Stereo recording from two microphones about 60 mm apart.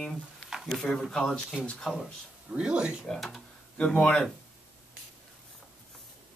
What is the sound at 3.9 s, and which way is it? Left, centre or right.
Speech, centre.